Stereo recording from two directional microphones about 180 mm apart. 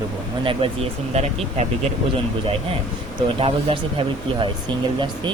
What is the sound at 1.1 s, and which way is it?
Speech, 35° right (ahead or behind).